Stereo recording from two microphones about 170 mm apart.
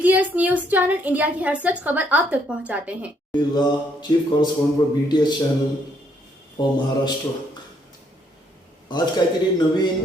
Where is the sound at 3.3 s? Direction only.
25° left (ahead or behind).